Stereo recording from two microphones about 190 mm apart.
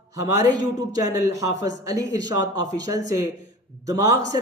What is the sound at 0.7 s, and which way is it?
Speech, 20° right (ahead or behind).